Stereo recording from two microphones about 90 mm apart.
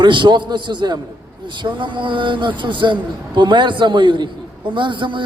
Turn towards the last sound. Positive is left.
turn(degrees=-65)  # may be behind; listen again after turning